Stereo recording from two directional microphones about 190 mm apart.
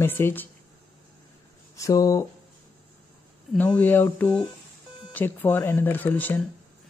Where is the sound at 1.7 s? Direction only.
15° left (ahead or behind).